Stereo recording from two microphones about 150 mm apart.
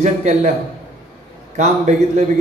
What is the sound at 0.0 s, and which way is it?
Speech, 50° right (ahead or behind).